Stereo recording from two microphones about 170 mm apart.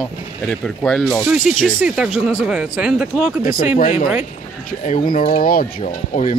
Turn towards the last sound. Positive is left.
turn(degrees=50)  # may be behind; listen again after turning